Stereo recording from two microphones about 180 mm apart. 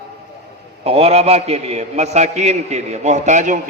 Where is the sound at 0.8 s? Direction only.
35° right (ahead or behind).